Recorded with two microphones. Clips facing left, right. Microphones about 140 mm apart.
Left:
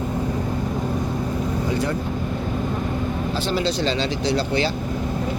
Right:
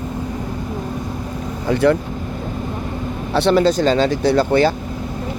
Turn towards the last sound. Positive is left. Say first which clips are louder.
# right 7 dB
turn(degrees=-50)  # may be behind; listen again after turning